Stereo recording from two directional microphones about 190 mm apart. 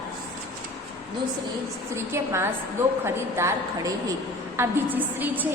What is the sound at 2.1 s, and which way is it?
A woman's voice, 15° right (ahead or behind).